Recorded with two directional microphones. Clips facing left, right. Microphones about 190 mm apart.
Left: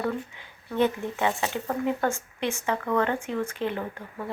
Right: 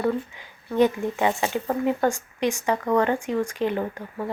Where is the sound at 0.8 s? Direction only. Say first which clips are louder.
Right 4 dB; 15° right (ahead or behind).